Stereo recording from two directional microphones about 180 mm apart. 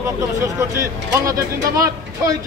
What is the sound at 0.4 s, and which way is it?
Speech, 15° right (ahead or behind).